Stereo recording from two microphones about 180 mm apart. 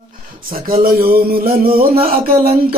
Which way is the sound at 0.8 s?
55° right (ahead or behind).